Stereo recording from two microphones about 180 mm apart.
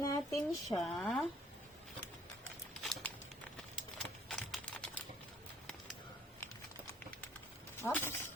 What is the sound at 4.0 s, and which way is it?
Typing, centre (ahead or behind).